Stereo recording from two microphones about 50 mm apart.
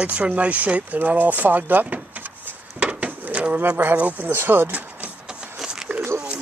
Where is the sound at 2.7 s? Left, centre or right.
Right.